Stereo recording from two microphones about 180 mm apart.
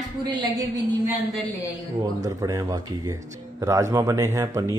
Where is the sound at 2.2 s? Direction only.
20° right (ahead or behind).